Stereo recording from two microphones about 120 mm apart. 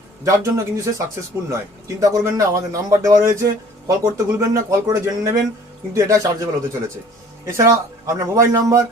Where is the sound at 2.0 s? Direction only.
30° right (ahead or behind).